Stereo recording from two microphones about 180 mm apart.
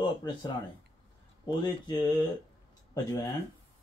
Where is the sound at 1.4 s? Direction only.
25° left (ahead or behind).